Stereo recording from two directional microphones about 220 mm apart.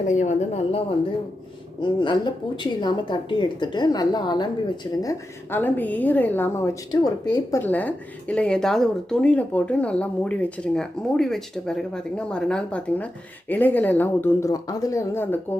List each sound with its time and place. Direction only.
0.1 s a woman's voice: 35° left (ahead or behind); by 15.5 s 10° left (ahead or behind)